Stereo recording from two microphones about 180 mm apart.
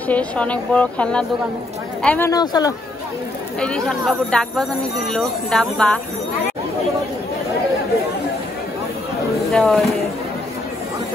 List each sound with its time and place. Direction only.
0.1 s speech: 5° left (ahead or behind)
2.3 s speech: 20° left (ahead or behind)
3.5 s speech: 5° left (ahead or behind)
9.5 s speech: centre (ahead or behind)